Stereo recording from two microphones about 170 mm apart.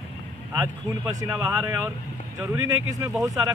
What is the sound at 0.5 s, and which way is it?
Speech, 15° right (ahead or behind).